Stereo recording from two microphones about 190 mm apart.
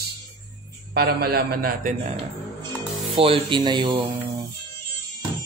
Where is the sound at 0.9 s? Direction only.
55° right (ahead or behind).